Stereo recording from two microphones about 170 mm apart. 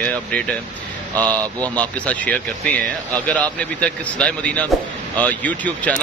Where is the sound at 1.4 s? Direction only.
20° right (ahead or behind).